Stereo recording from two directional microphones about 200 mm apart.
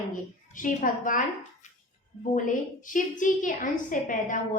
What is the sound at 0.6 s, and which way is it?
Speech, 40° left (ahead or behind).